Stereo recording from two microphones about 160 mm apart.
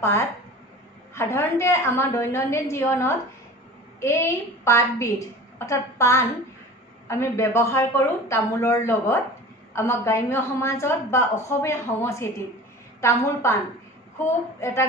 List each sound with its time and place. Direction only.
1.1 s a woman's voice: 15° left (ahead or behind)